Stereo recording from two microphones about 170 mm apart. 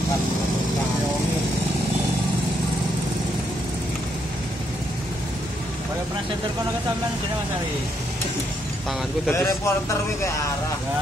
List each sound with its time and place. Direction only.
9.3 s speech: 15° left (ahead or behind)